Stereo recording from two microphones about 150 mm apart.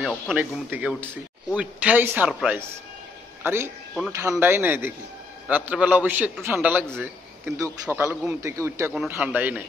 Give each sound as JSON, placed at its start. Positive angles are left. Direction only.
{"t": 0.0, "sound": "speech", "side_deg": 0}